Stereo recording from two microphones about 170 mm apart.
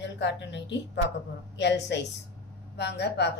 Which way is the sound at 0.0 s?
90° left.